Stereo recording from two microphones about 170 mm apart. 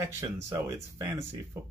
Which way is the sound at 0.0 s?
15° right (ahead or behind).